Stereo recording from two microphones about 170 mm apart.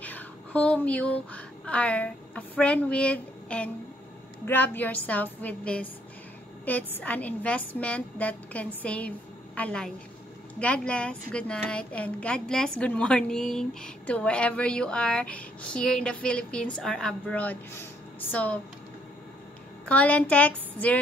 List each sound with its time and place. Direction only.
0.0 s a woman's voice: 10° left (ahead or behind)
19.9 s a woman's voice: 10° left (ahead or behind)